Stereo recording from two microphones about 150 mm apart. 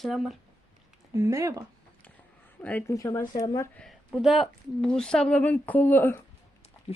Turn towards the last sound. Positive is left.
turn(degrees=15)  # may be behind; listen again after turning